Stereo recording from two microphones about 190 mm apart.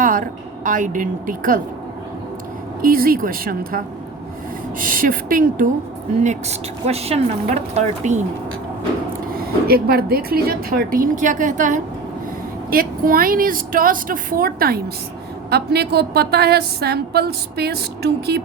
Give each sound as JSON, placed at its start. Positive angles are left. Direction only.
{"t": 0.0, "sound": "a woman's voice", "side_deg": -45}
{"t": 2.8, "sound": "speech", "side_deg": -50}
{"t": 6.2, "sound": "speech", "side_deg": -35}
{"t": 9.3, "sound": "a woman's voice", "side_deg": -50}